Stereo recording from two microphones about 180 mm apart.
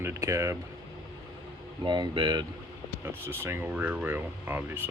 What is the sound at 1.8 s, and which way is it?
Speech, 25° right (ahead or behind).